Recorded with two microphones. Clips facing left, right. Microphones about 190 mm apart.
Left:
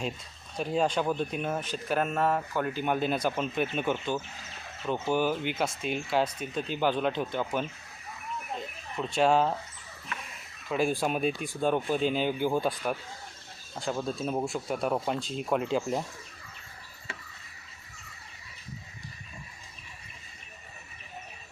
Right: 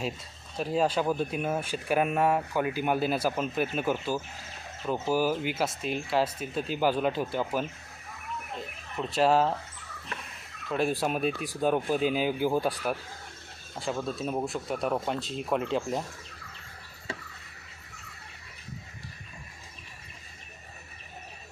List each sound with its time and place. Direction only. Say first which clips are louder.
0.5 s speech: right 1 dB; 5° right (ahead or behind)
9.0 s speech: even; centre (ahead or behind)
10.7 s speech: even; centre (ahead or behind)
13.7 s speech: even; 5° right (ahead or behind)